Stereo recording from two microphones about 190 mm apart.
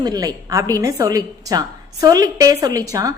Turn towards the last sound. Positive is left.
turn(degrees=-20)  # may be behind; listen again after turning